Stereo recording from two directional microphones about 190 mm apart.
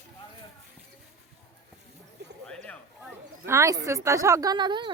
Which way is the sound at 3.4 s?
15° right (ahead or behind).